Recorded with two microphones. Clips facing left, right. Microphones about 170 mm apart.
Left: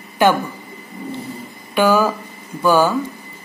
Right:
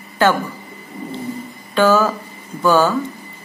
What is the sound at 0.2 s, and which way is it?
Speech, 15° left (ahead or behind).